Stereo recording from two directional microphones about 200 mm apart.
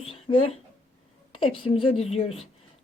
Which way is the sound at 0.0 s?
30° left (ahead or behind).